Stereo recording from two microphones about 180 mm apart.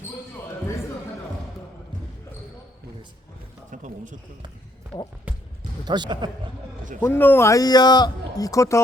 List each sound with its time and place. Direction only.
3.7 s speech: 45° right (ahead or behind)
5.8 s a man's voice: 25° right (ahead or behind)
7.0 s speech: 10° left (ahead or behind)